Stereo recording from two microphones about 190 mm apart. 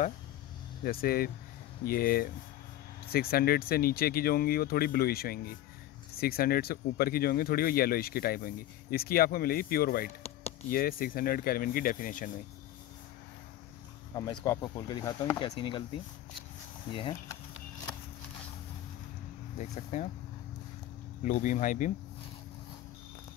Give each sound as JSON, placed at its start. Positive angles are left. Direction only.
{"t": 0.8, "sound": "speech", "side_deg": 50}
{"t": 14.1, "sound": "speech", "side_deg": 20}
{"t": 19.6, "sound": "speech", "side_deg": 40}
{"t": 21.2, "sound": "speech", "side_deg": 45}